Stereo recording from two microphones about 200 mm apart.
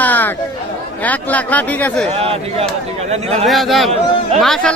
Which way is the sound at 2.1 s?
30° right (ahead or behind).